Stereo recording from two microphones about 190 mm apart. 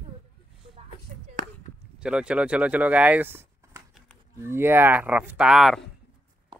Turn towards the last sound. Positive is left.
turn(degrees=0)  # may be behind; listen again after turning